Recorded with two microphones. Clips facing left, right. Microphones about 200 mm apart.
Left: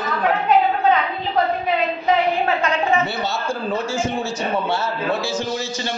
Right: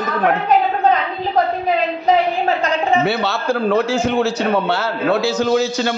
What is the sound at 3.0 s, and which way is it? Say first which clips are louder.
A man's voice: right 5 dB; 70° right (ahead or behind).